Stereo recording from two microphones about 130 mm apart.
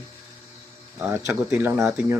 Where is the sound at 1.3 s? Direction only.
10° right (ahead or behind).